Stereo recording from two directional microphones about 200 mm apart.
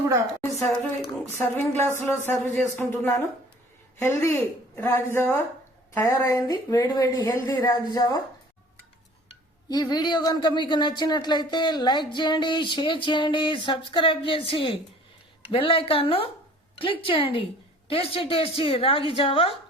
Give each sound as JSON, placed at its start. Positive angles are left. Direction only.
{"t": 1.4, "sound": "speech", "side_deg": 10}
{"t": 9.6, "sound": "speech", "side_deg": 20}